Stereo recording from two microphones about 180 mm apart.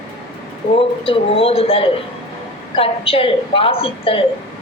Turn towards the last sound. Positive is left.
turn(degrees=30)  # may be behind; listen again after turning